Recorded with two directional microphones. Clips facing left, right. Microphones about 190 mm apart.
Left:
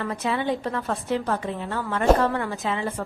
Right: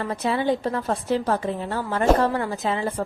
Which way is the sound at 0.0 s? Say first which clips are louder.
Right 2 dB; 35° right (ahead or behind).